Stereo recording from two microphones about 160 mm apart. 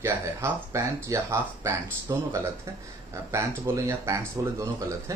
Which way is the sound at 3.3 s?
15° right (ahead or behind).